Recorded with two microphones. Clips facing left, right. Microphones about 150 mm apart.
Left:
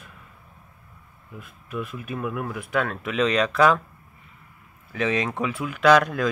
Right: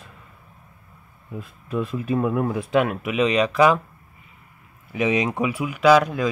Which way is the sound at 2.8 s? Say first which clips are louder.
Right 3 dB; 10° right (ahead or behind).